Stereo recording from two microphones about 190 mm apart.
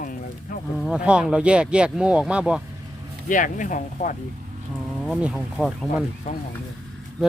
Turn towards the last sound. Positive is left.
turn(degrees=40)  # may be behind; listen again after turning